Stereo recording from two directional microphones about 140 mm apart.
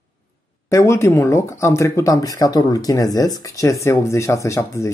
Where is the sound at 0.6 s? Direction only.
20° left (ahead or behind).